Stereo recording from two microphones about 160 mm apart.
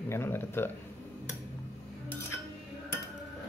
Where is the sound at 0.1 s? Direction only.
15° left (ahead or behind).